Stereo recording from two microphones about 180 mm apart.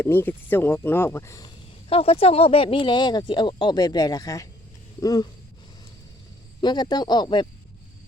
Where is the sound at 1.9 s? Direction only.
30° left (ahead or behind).